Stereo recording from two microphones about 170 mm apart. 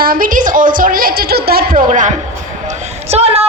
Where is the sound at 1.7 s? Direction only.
45° right (ahead or behind).